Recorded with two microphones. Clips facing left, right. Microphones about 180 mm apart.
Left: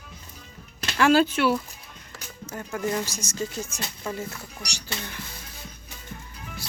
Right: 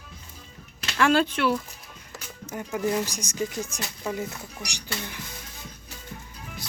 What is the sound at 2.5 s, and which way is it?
Speech, 15° right (ahead or behind).